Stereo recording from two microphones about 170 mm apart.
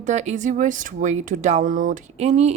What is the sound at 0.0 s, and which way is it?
Speech, 45° right (ahead or behind).